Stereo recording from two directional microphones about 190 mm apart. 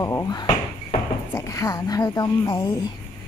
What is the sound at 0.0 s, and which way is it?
Speech, 15° left (ahead or behind).